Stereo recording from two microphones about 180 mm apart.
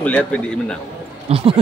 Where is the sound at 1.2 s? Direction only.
35° right (ahead or behind).